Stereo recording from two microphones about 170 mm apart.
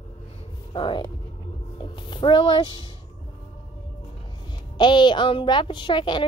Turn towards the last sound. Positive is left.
turn(degrees=25)  # may be behind; listen again after turning